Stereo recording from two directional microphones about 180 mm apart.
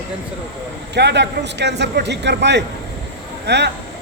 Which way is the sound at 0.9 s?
70° right (ahead or behind).